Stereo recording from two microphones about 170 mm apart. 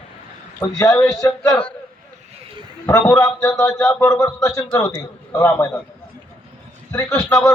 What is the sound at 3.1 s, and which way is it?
A man's voice, 20° left (ahead or behind).